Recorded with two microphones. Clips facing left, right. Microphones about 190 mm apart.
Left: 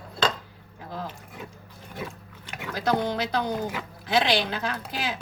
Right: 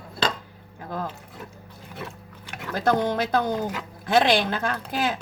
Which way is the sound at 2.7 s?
50° right (ahead or behind).